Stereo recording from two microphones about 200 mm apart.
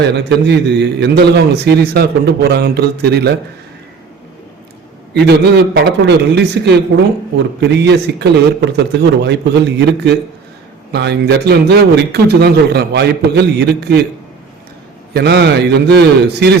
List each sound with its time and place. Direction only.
0.3 s a man's voice: 60° right (ahead or behind)
5.1 s a man's voice: 55° right (ahead or behind)
15.1 s a man's voice: 55° right (ahead or behind)